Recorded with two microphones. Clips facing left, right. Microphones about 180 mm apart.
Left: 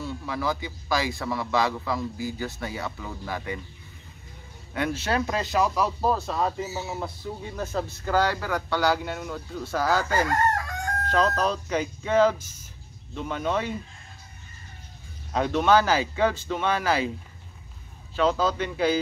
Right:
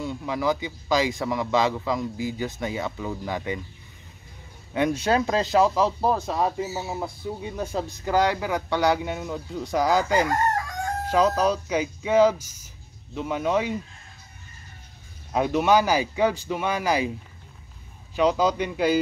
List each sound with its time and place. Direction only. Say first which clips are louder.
0.0 s speech: right 3 dB; 15° right (ahead or behind)
5.0 s speech: right 4 dB; 25° right (ahead or behind); by 13.7 s 10° right (ahead or behind)
15.3 s speech: right 1 dB; 10° right (ahead or behind)
18.1 s speech: right 2 dB; 15° right (ahead or behind)